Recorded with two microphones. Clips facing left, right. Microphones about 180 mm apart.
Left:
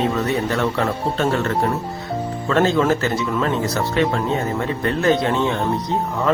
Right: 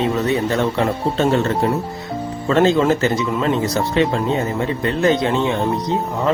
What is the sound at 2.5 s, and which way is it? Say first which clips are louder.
Speech: right 2 dB; 20° right (ahead or behind).